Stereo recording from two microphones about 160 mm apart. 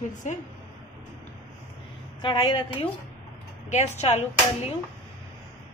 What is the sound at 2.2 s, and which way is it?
Speech, 30° left (ahead or behind).